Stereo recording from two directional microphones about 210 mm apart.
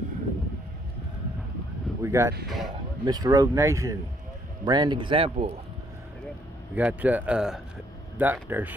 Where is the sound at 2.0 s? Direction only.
15° right (ahead or behind).